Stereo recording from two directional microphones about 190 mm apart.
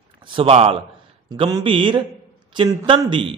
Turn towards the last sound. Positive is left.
turn(degrees=-25)  # may be behind; listen again after turning